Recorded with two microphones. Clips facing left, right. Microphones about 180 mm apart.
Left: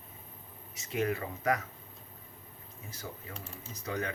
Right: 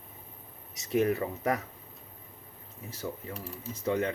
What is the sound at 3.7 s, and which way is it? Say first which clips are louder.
Speech: right 7 dB; 25° right (ahead or behind).